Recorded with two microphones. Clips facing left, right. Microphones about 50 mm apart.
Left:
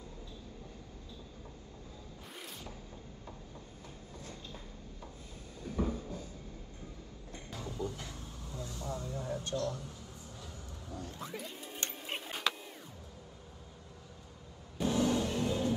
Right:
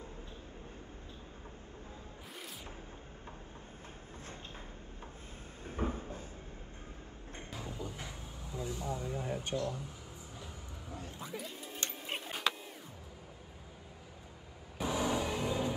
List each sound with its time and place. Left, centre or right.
2.2 s music: centre
5.7 s a sound: right
7.8 s a sound: right
11.0 s music: centre
11.3 s music: centre
11.9 s printer: centre
14.8 s vehicle: right